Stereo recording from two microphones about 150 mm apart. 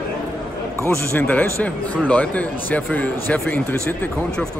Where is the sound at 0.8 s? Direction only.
10° left (ahead or behind).